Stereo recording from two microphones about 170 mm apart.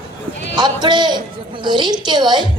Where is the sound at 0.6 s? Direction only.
25° right (ahead or behind).